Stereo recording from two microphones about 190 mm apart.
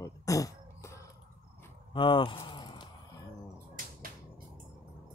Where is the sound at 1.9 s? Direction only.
25° left (ahead or behind).